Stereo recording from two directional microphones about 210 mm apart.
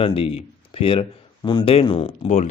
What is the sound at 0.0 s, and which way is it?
A man's voice, 25° left (ahead or behind).